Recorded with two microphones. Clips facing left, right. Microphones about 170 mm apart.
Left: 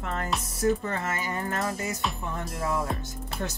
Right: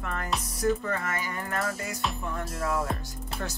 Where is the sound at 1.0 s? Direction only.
25° left (ahead or behind).